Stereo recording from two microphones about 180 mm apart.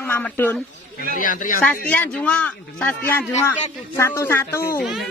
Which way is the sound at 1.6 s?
10° left (ahead or behind).